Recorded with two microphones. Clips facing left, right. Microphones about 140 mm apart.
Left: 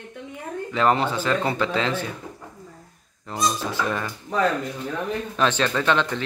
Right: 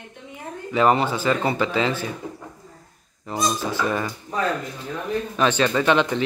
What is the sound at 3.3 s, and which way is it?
Speech, 5° right (ahead or behind).